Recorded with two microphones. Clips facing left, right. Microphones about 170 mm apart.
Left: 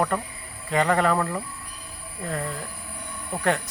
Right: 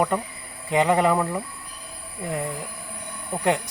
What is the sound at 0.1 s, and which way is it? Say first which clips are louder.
Speech: right 2 dB; 15° right (ahead or behind).